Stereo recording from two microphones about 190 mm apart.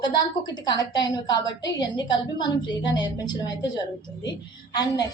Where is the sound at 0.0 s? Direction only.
20° left (ahead or behind).